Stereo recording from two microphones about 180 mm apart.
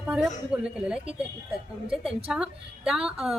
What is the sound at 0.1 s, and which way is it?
Speech, 5° right (ahead or behind).